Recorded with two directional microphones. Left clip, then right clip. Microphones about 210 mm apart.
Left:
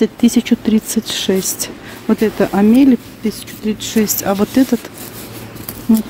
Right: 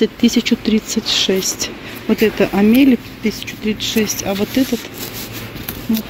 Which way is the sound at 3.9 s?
25° left (ahead or behind).